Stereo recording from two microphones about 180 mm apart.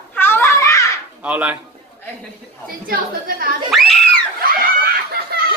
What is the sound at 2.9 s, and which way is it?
Speech, 55° right (ahead or behind).